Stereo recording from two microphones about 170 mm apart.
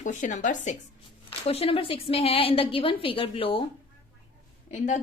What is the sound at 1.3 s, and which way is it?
A woman's voice, 35° left (ahead or behind).